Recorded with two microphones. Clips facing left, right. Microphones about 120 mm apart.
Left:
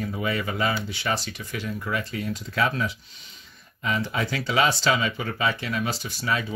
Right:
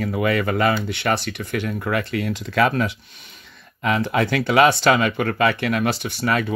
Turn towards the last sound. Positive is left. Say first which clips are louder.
# right 6 dB
turn(degrees=-60)  # may be behind; listen again after turning